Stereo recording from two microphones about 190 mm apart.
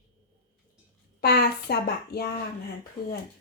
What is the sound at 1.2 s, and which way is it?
A woman's voice, 55° left (ahead or behind).